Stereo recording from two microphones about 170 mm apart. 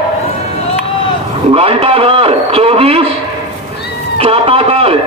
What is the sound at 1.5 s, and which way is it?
A man's voice, 35° right (ahead or behind).